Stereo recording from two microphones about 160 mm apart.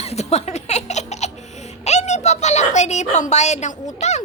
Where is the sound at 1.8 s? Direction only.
45° left (ahead or behind).